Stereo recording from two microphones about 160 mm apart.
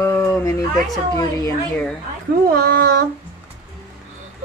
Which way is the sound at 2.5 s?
70° right (ahead or behind).